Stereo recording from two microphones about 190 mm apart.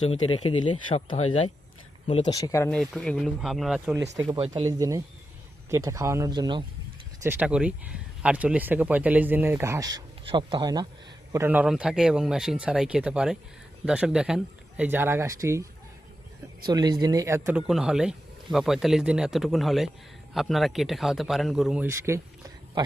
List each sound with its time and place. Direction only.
0.4 s speech: 25° left (ahead or behind)
2.6 s speech: 5° left (ahead or behind)
4.2 s speech: 25° right (ahead or behind)
4.6 s speech: 15° right (ahead or behind)
7.2 s speech: 10° right (ahead or behind)
16.6 s speech: 20° right (ahead or behind)
17.7 s speech: centre (ahead or behind)